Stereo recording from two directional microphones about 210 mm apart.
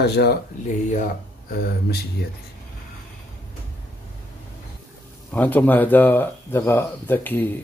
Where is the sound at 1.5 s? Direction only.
50° left (ahead or behind).